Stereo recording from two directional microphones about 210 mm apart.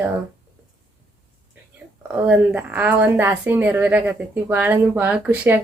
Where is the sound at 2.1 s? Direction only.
10° right (ahead or behind).